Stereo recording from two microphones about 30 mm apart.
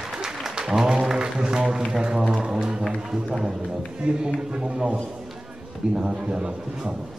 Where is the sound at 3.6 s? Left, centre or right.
Right.